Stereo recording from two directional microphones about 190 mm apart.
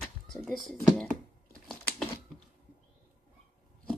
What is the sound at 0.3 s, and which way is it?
Speech, centre (ahead or behind).